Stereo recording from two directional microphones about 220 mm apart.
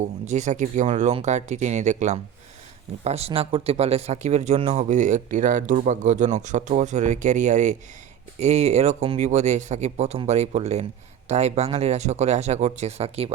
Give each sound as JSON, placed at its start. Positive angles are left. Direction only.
{"t": 0.0, "sound": "speech", "side_deg": -30}